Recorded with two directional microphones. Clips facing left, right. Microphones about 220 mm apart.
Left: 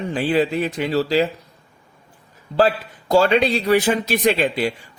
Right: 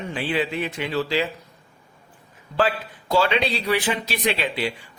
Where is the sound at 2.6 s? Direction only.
40° left (ahead or behind).